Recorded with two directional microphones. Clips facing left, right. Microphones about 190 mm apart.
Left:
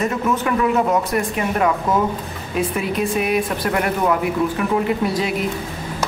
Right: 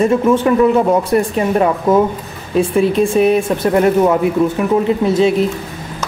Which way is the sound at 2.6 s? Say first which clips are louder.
Right 8 dB; 30° right (ahead or behind).